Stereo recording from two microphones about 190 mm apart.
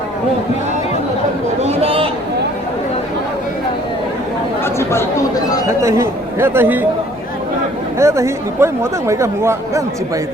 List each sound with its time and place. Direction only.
1.6 s a sound: 30° right (ahead or behind)
4.6 s chatter: 15° left (ahead or behind)
5.6 s speech: 15° right (ahead or behind)
7.9 s speech: 15° right (ahead or behind)